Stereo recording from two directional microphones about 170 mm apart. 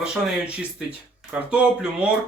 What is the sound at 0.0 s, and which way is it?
Speech, 5° right (ahead or behind).